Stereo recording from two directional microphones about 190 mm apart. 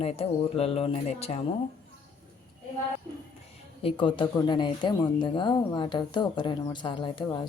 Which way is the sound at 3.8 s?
30° left (ahead or behind).